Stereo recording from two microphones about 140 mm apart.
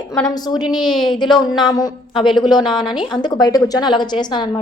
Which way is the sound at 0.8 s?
Centre (ahead or behind).